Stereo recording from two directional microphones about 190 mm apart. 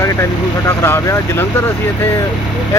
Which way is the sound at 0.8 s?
15° left (ahead or behind).